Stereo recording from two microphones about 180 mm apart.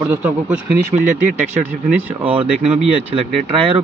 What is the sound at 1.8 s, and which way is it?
Speech, 10° right (ahead or behind).